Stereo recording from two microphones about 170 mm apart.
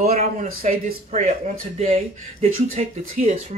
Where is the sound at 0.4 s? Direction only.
55° right (ahead or behind).